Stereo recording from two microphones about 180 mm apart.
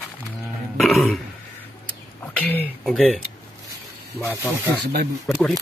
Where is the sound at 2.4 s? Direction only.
10° left (ahead or behind).